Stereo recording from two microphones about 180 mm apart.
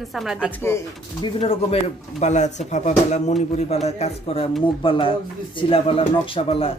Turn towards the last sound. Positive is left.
turn(degrees=30)  # may be behind; listen again after turning